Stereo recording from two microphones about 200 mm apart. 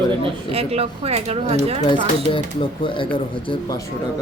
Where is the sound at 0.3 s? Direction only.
30° right (ahead or behind).